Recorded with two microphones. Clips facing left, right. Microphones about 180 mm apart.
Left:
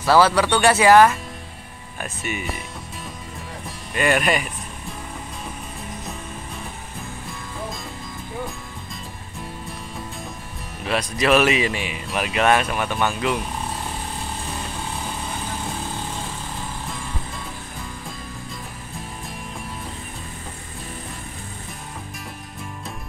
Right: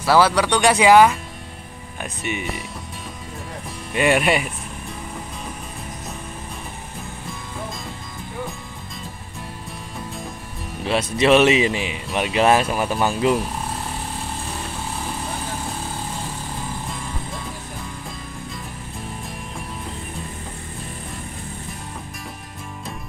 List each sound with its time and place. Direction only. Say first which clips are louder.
0.0 s speech: even; 10° right (ahead or behind)
3.9 s speech: right 2 dB; 20° right (ahead or behind)
4.2 s speech: right 2 dB; 5° right (ahead or behind)
11.1 s a man's voice: right 3 dB; 25° right (ahead or behind)